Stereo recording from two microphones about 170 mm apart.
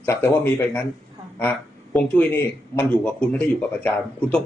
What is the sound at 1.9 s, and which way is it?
Speech, 5° left (ahead or behind).